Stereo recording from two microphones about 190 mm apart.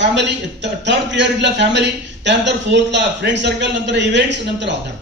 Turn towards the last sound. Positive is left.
turn(degrees=-65)  # may be behind; listen again after turning